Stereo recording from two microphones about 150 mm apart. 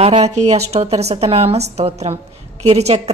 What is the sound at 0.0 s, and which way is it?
A woman's voice, 45° right (ahead or behind).